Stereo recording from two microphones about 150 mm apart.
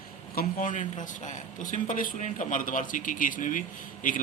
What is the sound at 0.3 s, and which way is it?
Speech, 60° left (ahead or behind).